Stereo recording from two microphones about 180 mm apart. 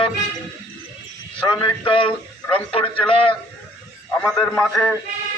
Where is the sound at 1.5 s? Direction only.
30° left (ahead or behind).